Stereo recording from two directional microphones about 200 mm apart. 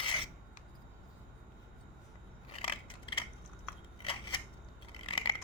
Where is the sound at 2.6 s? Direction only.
25° left (ahead or behind).